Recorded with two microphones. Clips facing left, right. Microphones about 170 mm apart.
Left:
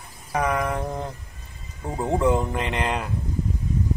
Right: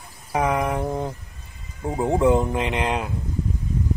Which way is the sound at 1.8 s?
20° right (ahead or behind).